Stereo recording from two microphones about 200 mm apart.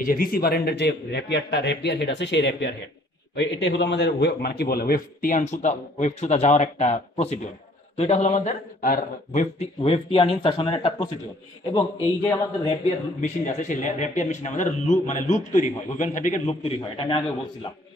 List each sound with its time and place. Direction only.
0.0 s a man's voice: 45° left (ahead or behind); by 11.1 s 25° left (ahead or behind)
12.6 s speech: 30° left (ahead or behind)